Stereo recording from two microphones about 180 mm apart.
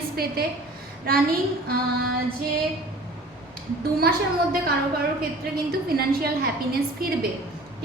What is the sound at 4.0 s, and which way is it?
Speech, 55° right (ahead or behind).